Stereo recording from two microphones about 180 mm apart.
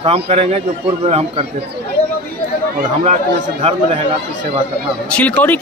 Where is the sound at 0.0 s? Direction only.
35° right (ahead or behind).